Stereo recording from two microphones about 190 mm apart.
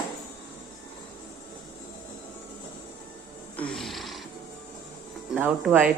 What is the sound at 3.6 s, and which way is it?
Music, 5° left (ahead or behind).